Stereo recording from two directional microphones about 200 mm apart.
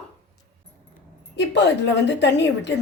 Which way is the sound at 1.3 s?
60° left (ahead or behind).